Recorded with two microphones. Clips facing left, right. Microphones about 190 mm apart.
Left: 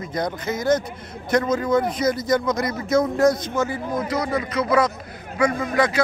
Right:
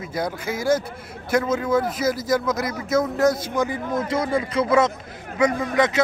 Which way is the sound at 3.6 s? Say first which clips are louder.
Even; 20° right (ahead or behind).